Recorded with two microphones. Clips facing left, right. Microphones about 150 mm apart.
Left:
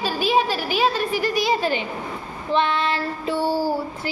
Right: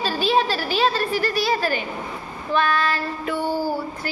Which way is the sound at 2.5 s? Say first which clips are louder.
Even; 25° left (ahead or behind).